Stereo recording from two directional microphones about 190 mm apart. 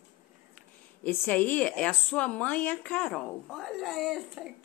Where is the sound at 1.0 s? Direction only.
10° left (ahead or behind).